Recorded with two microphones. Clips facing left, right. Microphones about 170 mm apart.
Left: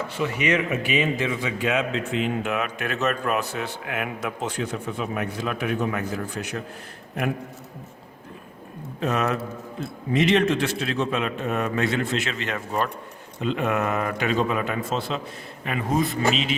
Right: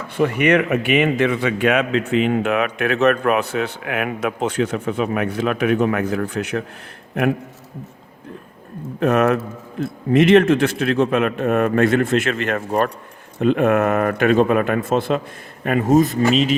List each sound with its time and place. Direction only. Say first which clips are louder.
0.2 s a man's voice: right 8 dB; 60° right (ahead or behind)
9.0 s a man's voice: right 8 dB; 60° right (ahead or behind); by 16.6 s 40° right (ahead or behind)